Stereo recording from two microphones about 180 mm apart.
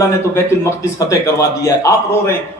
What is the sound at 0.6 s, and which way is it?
Speech, 15° left (ahead or behind).